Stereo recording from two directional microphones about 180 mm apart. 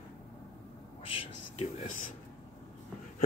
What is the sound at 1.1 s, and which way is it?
Whispering, 30° left (ahead or behind).